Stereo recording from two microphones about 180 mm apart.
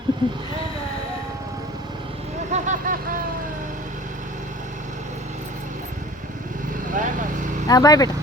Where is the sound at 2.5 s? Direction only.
45° right (ahead or behind).